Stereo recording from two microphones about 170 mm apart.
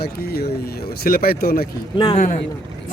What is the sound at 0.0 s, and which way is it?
Speech, 70° left (ahead or behind).